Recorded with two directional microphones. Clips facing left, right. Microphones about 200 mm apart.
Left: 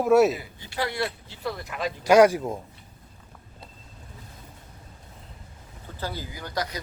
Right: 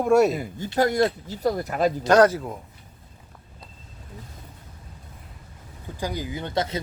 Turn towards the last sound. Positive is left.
turn(degrees=-25)  # may be behind; listen again after turning